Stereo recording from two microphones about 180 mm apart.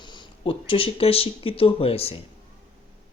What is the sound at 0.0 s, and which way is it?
Speech, 25° left (ahead or behind).